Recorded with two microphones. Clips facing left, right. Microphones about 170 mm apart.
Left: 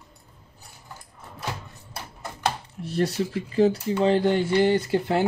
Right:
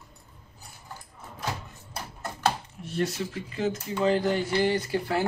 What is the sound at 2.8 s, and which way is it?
Speech, 35° left (ahead or behind).